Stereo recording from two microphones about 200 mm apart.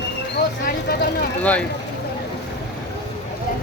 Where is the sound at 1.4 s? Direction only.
5° left (ahead or behind).